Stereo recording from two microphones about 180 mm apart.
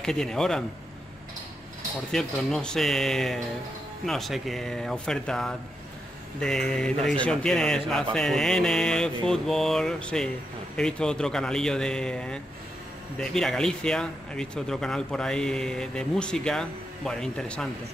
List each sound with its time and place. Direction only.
0.0 s a man's voice: 5° left (ahead or behind)
2.1 s a man's voice: centre (ahead or behind)